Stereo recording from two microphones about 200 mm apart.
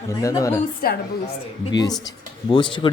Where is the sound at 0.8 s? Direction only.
45° left (ahead or behind).